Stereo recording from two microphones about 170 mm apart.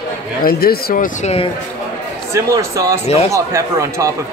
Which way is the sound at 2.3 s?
20° right (ahead or behind).